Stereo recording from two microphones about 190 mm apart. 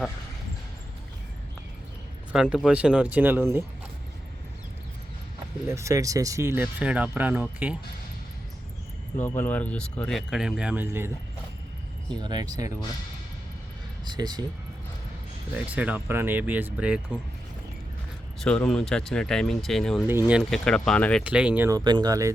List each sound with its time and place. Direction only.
2.3 s speech: 5° right (ahead or behind)
5.6 s speech: 15° right (ahead or behind)
9.1 s speech: 10° left (ahead or behind); by 11.1 s 10° right (ahead or behind)
12.1 s speech: 20° right (ahead or behind)
14.0 s speech: 20° right (ahead or behind)
15.5 s speech: 5° right (ahead or behind)
18.4 s speech: 5° left (ahead or behind)
20.1 s speech: 10° right (ahead or behind)
21.2 s speech: 5° right (ahead or behind)